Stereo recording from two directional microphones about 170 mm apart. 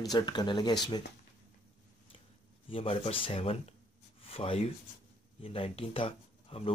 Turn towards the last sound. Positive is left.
turn(degrees=35)  # may be behind; listen again after turning